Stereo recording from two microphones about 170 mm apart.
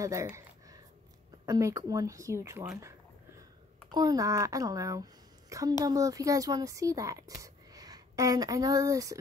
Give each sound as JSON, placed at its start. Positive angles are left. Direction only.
{"t": 0.0, "sound": "a sound", "side_deg": -15}
{"t": 1.4, "sound": "speech", "side_deg": -20}
{"t": 3.9, "sound": "a child's voice", "side_deg": -25}